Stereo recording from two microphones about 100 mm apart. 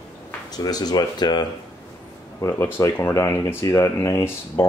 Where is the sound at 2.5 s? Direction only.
25° left (ahead or behind).